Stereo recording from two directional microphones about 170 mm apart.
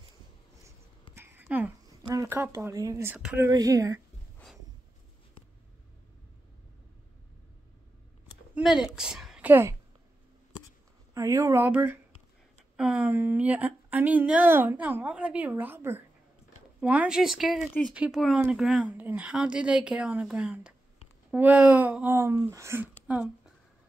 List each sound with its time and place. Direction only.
1.1 s a sound: 10° right (ahead or behind)
2.0 s a woman's voice: 15° right (ahead or behind)
3.2 s a woman's voice: 5° right (ahead or behind)
3.4 s speech: 20° right (ahead or behind)
8.5 s a woman's voice: 5° right (ahead or behind)
11.1 s a woman's voice: 20° right (ahead or behind)